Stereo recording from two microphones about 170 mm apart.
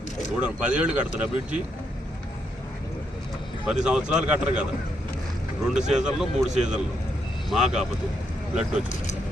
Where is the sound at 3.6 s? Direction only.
5° right (ahead or behind).